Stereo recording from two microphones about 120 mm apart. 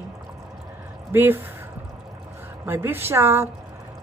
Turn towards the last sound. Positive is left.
turn(degrees=-20)  # may be behind; listen again after turning